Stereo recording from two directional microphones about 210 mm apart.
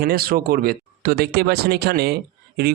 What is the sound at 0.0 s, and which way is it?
Speech, 45° right (ahead or behind).